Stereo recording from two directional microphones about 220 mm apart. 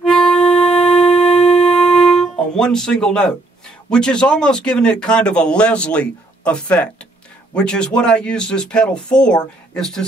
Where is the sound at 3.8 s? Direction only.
5° left (ahead or behind).